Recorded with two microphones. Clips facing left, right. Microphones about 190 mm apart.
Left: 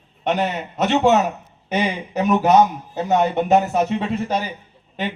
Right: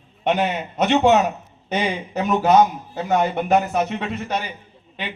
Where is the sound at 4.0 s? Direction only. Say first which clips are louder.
Left 3 dB; 35° left (ahead or behind).